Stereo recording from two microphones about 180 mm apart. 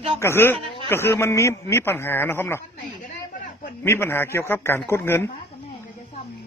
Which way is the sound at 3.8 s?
15° left (ahead or behind).